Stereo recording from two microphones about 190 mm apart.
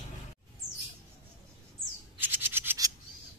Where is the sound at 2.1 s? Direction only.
10° right (ahead or behind).